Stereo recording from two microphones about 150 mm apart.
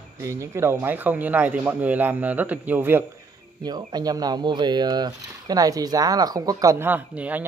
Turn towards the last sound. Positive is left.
turn(degrees=-10)  # may be behind; listen again after turning